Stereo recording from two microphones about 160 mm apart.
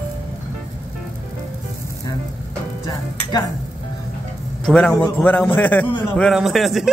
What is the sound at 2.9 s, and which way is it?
Stir, 25° left (ahead or behind).